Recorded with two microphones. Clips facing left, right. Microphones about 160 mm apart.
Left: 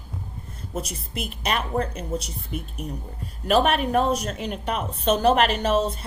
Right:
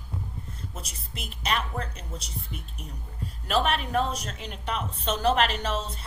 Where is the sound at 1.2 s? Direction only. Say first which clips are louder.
Left 3 dB; 55° left (ahead or behind).